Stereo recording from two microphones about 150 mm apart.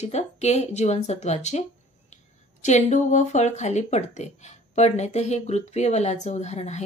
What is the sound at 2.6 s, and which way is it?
Speech, 50° left (ahead or behind).